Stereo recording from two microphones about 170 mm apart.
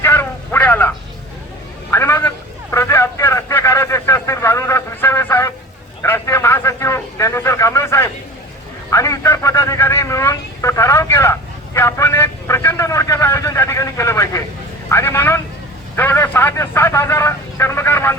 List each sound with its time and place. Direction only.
0.0 s a sound: 15° left (ahead or behind)
1.9 s vehicle: 15° left (ahead or behind)
8.9 s a man's voice: 20° left (ahead or behind)